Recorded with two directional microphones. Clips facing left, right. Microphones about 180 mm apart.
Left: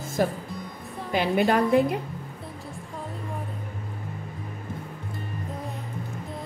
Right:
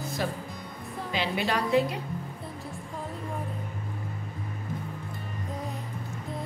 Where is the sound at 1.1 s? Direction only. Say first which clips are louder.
Left 7 dB; 50° left (ahead or behind).